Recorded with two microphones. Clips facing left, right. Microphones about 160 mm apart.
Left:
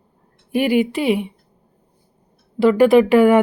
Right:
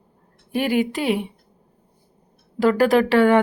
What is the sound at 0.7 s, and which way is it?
Speech, 40° right (ahead or behind).